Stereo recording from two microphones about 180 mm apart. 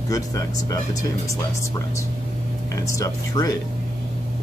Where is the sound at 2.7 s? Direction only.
15° left (ahead or behind).